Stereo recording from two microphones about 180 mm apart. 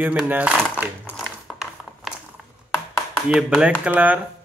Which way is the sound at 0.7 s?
5° right (ahead or behind).